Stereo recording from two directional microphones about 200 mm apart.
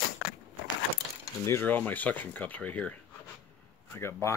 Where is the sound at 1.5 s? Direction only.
10° left (ahead or behind).